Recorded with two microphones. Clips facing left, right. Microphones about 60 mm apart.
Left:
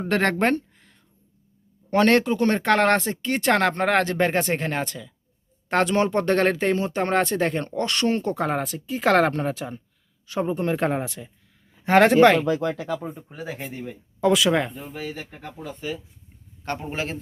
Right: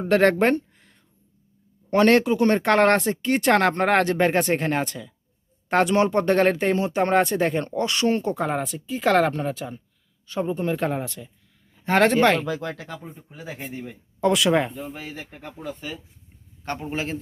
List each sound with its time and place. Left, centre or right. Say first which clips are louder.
0.1 s speech: right 4 dB; centre
1.9 s speech: right 1 dB; centre
13.8 s speech: left 1 dB; centre
16.9 s speech: right 2 dB; centre